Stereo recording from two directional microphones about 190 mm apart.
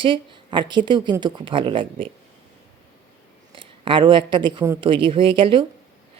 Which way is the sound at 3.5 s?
25° right (ahead or behind).